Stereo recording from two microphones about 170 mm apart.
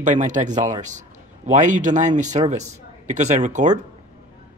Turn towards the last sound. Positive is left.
turn(degrees=-45)  # may be behind; listen again after turning